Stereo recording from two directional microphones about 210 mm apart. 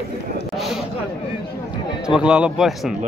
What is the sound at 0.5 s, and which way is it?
Speech, centre (ahead or behind).